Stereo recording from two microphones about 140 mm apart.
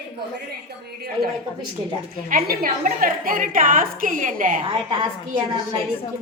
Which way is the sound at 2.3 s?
90° right.